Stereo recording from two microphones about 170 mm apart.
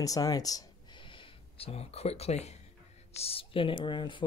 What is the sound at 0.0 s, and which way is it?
Speech, 20° left (ahead or behind).